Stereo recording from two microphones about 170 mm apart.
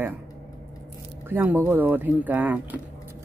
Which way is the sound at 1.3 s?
10° right (ahead or behind).